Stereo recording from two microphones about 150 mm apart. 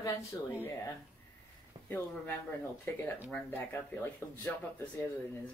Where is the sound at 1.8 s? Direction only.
15° left (ahead or behind).